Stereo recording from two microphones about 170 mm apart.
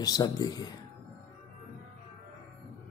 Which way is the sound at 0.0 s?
25° left (ahead or behind).